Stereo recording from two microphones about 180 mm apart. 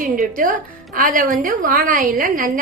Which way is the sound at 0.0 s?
50° right (ahead or behind).